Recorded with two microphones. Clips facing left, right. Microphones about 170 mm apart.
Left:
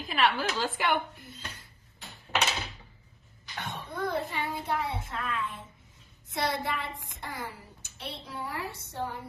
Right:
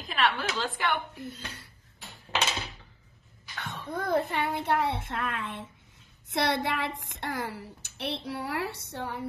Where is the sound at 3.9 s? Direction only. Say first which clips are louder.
Right 4 dB; 45° right (ahead or behind).